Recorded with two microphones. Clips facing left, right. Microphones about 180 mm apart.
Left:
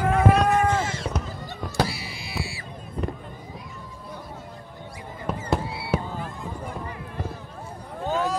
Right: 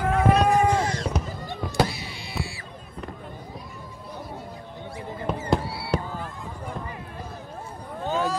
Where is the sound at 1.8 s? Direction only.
10° left (ahead or behind).